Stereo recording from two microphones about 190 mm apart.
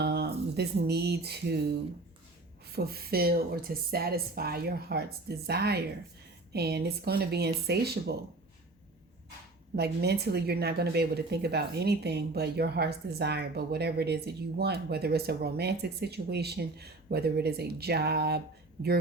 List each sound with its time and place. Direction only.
0.0 s speech: 60° right (ahead or behind)
2.7 s a woman's voice: 55° right (ahead or behind)
9.7 s a woman's voice: 55° right (ahead or behind)